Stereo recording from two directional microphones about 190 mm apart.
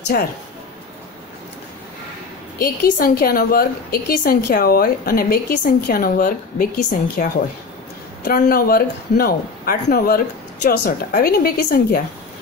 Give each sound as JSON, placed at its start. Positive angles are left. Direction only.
{"t": 0.1, "sound": "a woman's voice", "side_deg": 50}
{"t": 2.6, "sound": "a woman's voice", "side_deg": 50}